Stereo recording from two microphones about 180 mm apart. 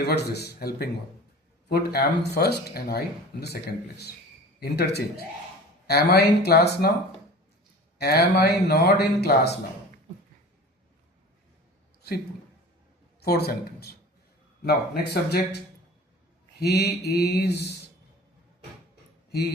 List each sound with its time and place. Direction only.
0.0 s speech: 65° left (ahead or behind)
7.9 s speech: 60° left (ahead or behind)
13.1 s speech: 60° left (ahead or behind)
16.6 s speech: 65° left (ahead or behind)
19.3 s speech: 65° left (ahead or behind)